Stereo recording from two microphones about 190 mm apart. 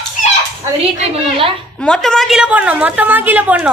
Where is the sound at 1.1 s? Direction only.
30° right (ahead or behind).